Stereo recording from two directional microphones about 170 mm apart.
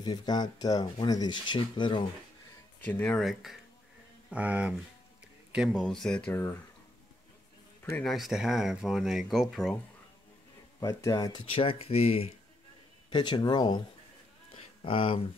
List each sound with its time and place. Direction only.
0.0 s speech: 25° left (ahead or behind)
2.8 s speech: 10° left (ahead or behind)
8.0 s speech: centre (ahead or behind)
10.8 s speech: 20° left (ahead or behind)
14.5 s a sound: 30° left (ahead or behind)